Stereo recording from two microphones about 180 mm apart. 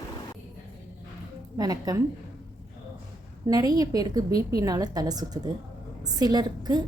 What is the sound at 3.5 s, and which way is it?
A woman's voice, 20° right (ahead or behind).